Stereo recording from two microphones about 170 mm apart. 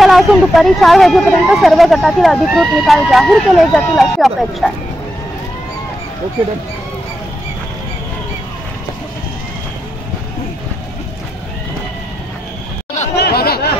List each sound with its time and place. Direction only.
0.0 s speech: centre (ahead or behind)
13.1 s chatter: 70° left (ahead or behind)